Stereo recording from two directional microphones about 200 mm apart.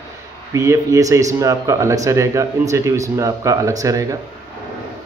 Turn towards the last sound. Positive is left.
turn(degrees=-15)  # may be behind; listen again after turning